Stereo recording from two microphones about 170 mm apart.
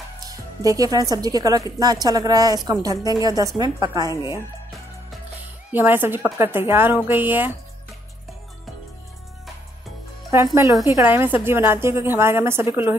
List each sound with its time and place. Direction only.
0.2 s a woman's voice: 20° right (ahead or behind)
5.7 s a woman's voice: 10° right (ahead or behind)
10.5 s a woman's voice: 15° right (ahead or behind)